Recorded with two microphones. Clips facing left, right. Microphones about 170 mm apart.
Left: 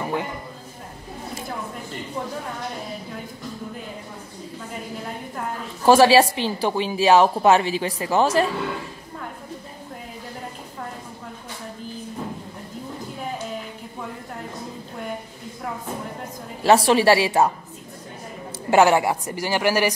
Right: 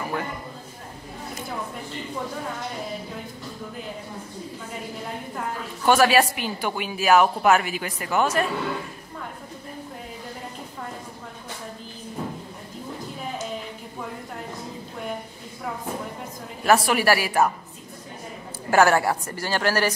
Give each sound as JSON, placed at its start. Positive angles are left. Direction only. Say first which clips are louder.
{"t": 0.0, "sound": "a sound", "louder": "left 3 dB", "side_deg": 20}
{"t": 5.9, "sound": "a woman's voice", "louder": "left 4 dB", "side_deg": 30}
{"t": 16.6, "sound": "a woman's voice", "louder": "left 4 dB", "side_deg": 30}
{"t": 18.7, "sound": "a woman's voice", "louder": "left 2 dB", "side_deg": 20}